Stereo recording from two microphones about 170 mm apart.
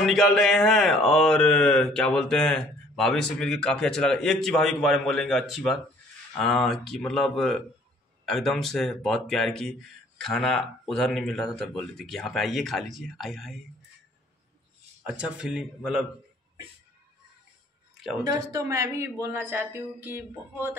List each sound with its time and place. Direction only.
0.0 s speech: 5° left (ahead or behind)
15.0 s speech: 5° right (ahead or behind)
18.2 s speech: 20° right (ahead or behind)